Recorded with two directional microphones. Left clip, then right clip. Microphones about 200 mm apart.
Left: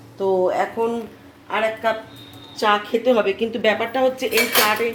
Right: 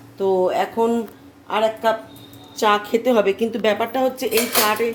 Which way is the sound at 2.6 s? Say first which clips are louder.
Right 1 dB; 25° right (ahead or behind).